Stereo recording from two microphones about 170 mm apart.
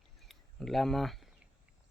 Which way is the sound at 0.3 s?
Centre (ahead or behind).